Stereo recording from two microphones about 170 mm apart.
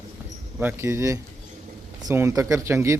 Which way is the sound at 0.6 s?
15° right (ahead or behind).